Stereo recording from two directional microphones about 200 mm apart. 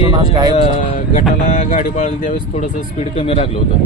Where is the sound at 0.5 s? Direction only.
30° left (ahead or behind).